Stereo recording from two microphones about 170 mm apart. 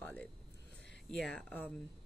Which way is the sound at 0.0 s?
10° left (ahead or behind).